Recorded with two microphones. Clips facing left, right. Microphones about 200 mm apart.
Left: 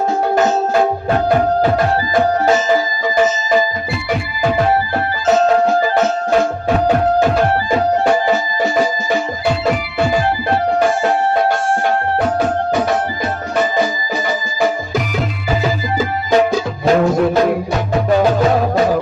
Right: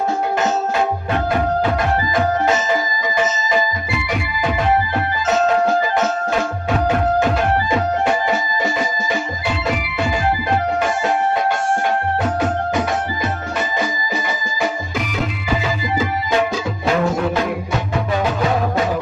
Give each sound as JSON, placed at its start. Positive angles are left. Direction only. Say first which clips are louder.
{"t": 8.0, "sound": "music", "louder": "left 4 dB", "side_deg": 35}
{"t": 16.3, "sound": "music", "louder": "left 8 dB", "side_deg": 40}